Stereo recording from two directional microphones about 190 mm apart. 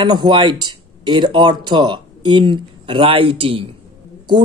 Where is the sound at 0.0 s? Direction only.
25° right (ahead or behind).